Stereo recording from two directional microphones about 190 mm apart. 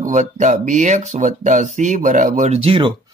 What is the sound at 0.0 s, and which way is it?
Speech, 40° right (ahead or behind).